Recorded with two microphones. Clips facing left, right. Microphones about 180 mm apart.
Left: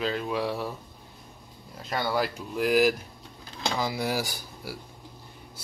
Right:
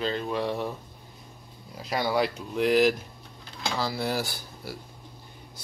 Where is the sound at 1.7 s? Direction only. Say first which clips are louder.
Right 2 dB; centre (ahead or behind).